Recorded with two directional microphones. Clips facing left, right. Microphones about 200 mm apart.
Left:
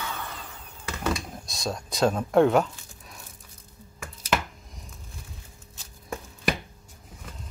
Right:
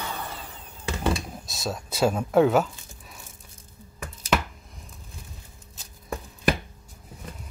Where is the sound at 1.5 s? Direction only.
5° right (ahead or behind).